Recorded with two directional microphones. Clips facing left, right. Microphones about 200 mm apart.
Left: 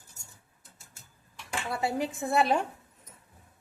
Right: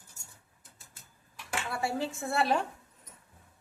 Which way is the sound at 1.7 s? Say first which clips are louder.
Left 3 dB; 20° left (ahead or behind).